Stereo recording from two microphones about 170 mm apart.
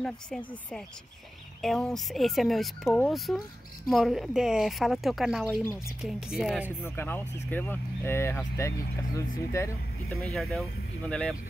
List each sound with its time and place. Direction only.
0.0 s speech: 5° left (ahead or behind)
1.6 s speech: centre (ahead or behind)
5.6 s speech: 15° left (ahead or behind)
5.9 s speech: 5° right (ahead or behind)
6.8 s speech: 10° left (ahead or behind)
10.0 s speech: centre (ahead or behind)